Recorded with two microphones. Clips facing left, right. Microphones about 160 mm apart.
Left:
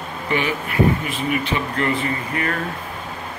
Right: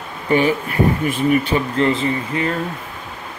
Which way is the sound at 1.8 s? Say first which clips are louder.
Right 5 dB; 25° right (ahead or behind).